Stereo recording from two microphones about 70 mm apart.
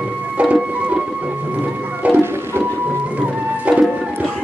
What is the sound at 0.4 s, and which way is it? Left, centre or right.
Printer, centre.